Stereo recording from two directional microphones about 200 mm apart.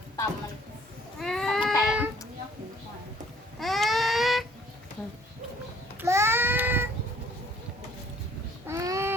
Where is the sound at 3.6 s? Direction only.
Centre (ahead or behind).